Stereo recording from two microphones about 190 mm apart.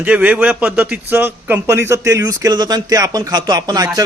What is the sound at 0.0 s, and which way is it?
A man's voice, 10° right (ahead or behind).